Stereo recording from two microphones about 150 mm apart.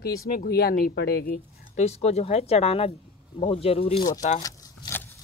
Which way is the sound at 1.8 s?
45° left (ahead or behind).